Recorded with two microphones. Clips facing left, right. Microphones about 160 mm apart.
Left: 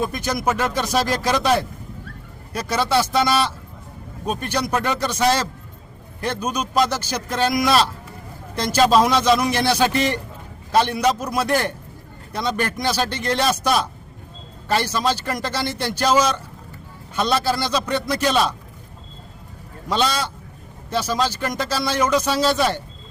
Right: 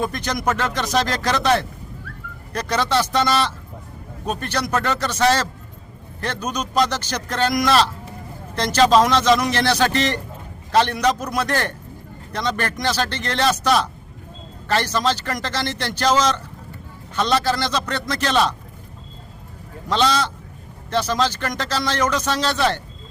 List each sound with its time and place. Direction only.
0.0 s speech: 10° left (ahead or behind)
19.9 s speech: 10° left (ahead or behind)